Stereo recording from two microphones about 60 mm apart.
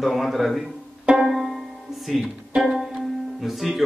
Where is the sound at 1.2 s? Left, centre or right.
Centre.